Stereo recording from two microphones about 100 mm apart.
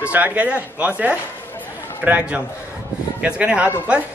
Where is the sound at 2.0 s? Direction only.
15° right (ahead or behind).